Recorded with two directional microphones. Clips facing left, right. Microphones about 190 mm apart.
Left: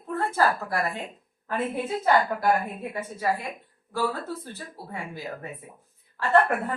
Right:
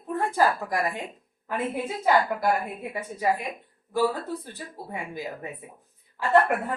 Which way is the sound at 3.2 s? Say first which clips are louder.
Right 2 dB; 15° right (ahead or behind).